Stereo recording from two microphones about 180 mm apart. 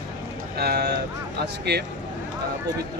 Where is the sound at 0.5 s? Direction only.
60° right (ahead or behind).